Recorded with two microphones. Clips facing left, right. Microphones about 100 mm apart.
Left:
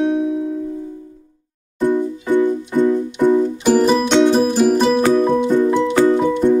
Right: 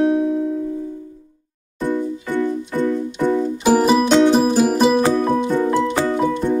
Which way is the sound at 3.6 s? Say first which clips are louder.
Right 1 dB; 5° right (ahead or behind).